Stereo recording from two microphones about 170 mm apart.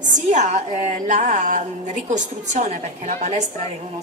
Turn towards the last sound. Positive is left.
turn(degrees=-45)  # may be behind; listen again after turning